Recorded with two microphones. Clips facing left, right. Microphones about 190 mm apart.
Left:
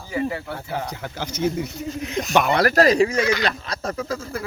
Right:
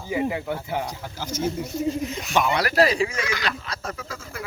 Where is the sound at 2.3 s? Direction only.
50° left (ahead or behind).